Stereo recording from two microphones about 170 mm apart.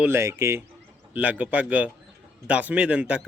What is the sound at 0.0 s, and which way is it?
A man's voice, 15° right (ahead or behind).